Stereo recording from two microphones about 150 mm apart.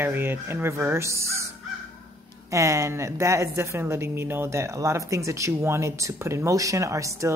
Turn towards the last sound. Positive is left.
turn(degrees=-20)  # may be behind; listen again after turning